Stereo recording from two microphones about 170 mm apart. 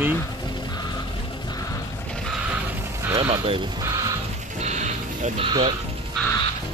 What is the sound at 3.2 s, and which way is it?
Speech, 30° right (ahead or behind).